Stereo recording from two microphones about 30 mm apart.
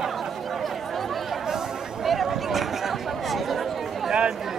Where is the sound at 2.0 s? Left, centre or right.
Centre.